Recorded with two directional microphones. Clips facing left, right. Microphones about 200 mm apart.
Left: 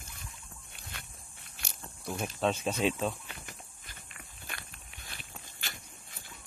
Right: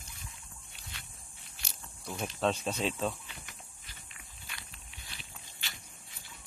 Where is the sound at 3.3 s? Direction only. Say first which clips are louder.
Left 3 dB; 50° left (ahead or behind).